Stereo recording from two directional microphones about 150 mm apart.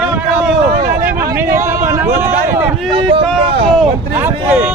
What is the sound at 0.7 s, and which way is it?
Vehicle, 90° right.